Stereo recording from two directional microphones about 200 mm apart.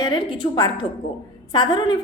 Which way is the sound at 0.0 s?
20° left (ahead or behind).